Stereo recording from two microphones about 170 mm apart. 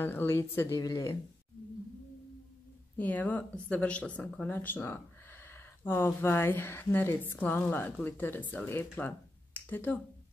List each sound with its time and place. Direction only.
0.0 s speech: 10° left (ahead or behind)
3.0 s speech: 10° left (ahead or behind)
8.9 s a sound: 10° left (ahead or behind)